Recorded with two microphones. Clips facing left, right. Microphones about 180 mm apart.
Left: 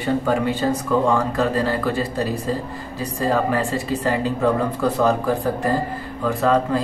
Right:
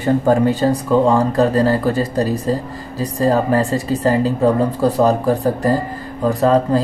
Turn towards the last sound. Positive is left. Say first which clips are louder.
# right 4 dB
turn(degrees=-35)  # may be behind; listen again after turning